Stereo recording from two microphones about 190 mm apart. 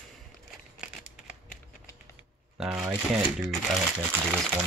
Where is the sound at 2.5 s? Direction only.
5° right (ahead or behind).